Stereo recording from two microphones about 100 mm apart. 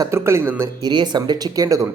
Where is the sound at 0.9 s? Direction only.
45° right (ahead or behind).